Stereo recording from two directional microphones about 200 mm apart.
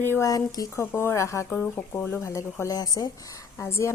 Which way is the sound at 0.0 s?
15° left (ahead or behind).